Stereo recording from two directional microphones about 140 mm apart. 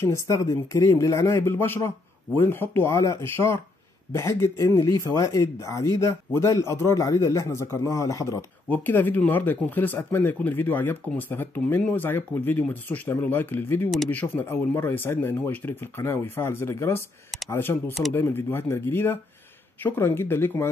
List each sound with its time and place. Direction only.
0.0 s speech: 20° left (ahead or behind)
8.6 s speech: 10° left (ahead or behind)